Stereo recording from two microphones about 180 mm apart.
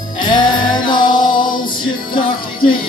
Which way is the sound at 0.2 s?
25° left (ahead or behind).